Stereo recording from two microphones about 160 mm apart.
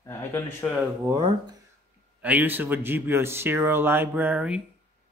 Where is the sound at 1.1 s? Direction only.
30° right (ahead or behind).